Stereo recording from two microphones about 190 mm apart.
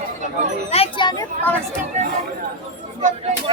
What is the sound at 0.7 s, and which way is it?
Children playing, 30° left (ahead or behind).